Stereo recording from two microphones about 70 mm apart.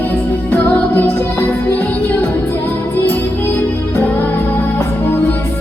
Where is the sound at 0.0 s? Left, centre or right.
Left.